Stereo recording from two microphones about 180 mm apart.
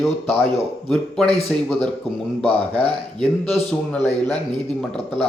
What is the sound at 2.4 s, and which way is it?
Speech, 25° right (ahead or behind).